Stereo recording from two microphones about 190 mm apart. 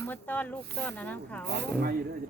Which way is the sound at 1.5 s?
60° right (ahead or behind).